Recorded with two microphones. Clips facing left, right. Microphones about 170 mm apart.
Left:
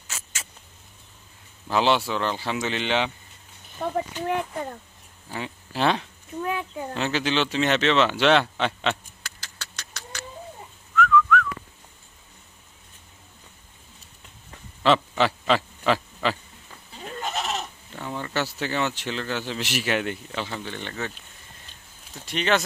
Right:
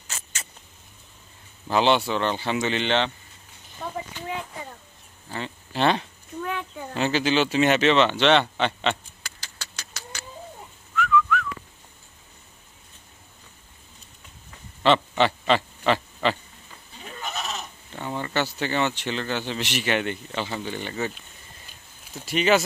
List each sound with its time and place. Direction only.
0.1 s rodents: 5° left (ahead or behind)
1.7 s speech: centre (ahead or behind)
3.8 s speech: 55° left (ahead or behind)
5.3 s speech: 5° left (ahead or behind)
11.0 s whistling: 5° right (ahead or behind)
14.8 s a sound: centre (ahead or behind)
17.0 s goat: 30° left (ahead or behind)
17.9 s speech: centre (ahead or behind)